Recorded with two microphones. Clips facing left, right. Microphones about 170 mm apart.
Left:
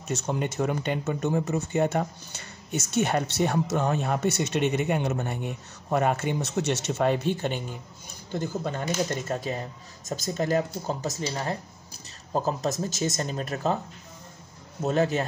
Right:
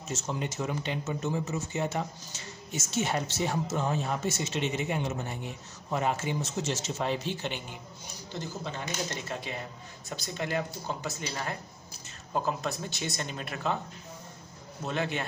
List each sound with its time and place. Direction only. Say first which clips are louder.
0.1 s speech: left 5 dB; 60° left (ahead or behind); by 13.7 s 40° left (ahead or behind)
14.8 s speech: left 8 dB; 40° left (ahead or behind)